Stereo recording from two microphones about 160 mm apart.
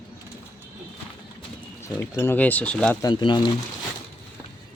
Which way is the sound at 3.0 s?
30° left (ahead or behind).